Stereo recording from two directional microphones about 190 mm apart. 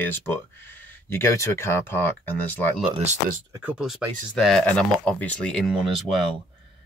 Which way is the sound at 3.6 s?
5° right (ahead or behind).